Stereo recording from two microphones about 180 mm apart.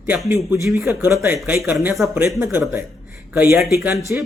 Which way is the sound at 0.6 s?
15° right (ahead or behind).